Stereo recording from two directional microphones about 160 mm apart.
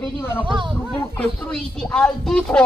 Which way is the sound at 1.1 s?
5° left (ahead or behind).